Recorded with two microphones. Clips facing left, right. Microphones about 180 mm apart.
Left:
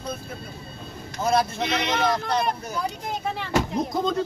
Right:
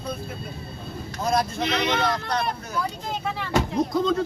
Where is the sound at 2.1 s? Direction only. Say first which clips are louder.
Left 2 dB; 20° left (ahead or behind).